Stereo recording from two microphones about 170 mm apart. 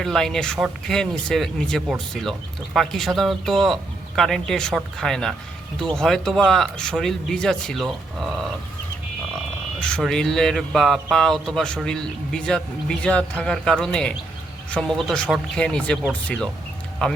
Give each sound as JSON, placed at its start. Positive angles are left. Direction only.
{"t": 0.0, "sound": "speech", "side_deg": 0}
{"t": 9.8, "sound": "speech", "side_deg": 5}